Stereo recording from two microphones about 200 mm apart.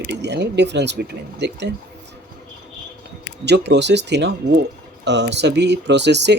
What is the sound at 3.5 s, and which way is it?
Speech, 60° right (ahead or behind).